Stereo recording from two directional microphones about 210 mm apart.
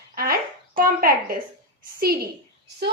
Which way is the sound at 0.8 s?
45° right (ahead or behind).